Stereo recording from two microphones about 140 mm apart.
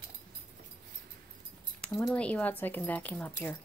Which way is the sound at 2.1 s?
10° left (ahead or behind).